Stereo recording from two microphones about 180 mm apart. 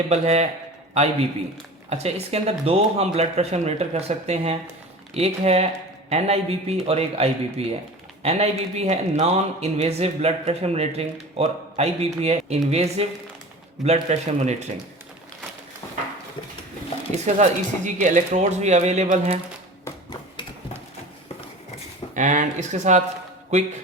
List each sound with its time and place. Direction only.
0.1 s speech: 35° right (ahead or behind)
17.3 s speech: 45° right (ahead or behind)
19.8 s a sound: 20° left (ahead or behind)
22.1 s speech: 45° right (ahead or behind)